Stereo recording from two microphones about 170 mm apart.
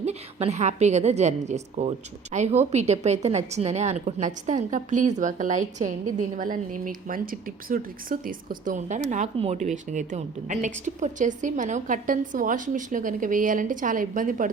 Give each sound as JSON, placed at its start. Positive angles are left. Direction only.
{"t": 0.0, "sound": "a woman's voice", "side_deg": -40}